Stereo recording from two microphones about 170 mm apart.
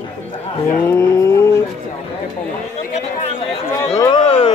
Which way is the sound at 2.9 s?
40° left (ahead or behind).